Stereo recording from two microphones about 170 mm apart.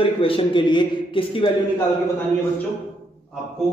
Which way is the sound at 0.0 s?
30° left (ahead or behind).